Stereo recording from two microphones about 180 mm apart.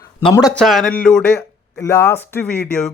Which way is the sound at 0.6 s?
Centre (ahead or behind).